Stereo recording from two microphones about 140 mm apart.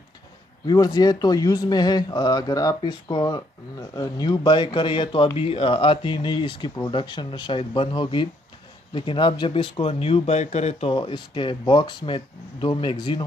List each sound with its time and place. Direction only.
0.7 s speech: 30° left (ahead or behind)